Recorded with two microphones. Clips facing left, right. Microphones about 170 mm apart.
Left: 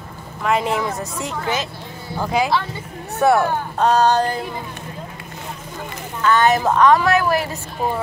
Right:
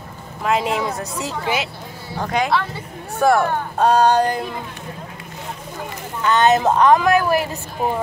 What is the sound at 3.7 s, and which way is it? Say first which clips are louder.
Speech: right 1 dB; 10° right (ahead or behind).